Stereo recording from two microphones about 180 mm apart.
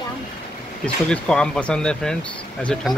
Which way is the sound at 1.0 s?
5° left (ahead or behind).